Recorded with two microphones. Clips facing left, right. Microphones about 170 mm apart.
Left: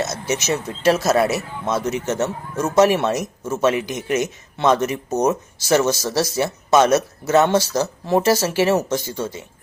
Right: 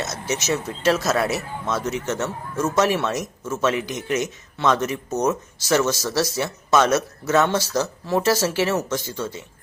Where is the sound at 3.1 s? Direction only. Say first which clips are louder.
Left 3 dB; 15° left (ahead or behind).